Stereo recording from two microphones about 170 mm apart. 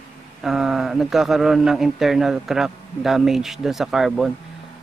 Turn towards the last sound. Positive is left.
turn(degrees=0)  # may be behind; listen again after turning